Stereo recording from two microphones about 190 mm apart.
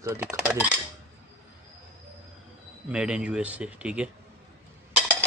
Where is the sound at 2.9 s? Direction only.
5° right (ahead or behind).